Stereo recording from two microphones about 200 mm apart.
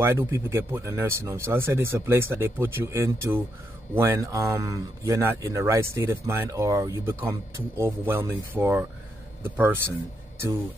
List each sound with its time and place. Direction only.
0.0 s speech: 10° right (ahead or behind)